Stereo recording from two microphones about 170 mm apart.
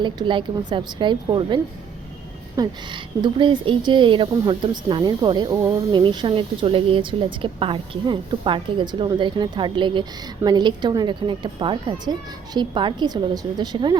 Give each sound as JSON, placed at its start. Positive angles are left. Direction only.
{"t": 0.0, "sound": "speech", "side_deg": -30}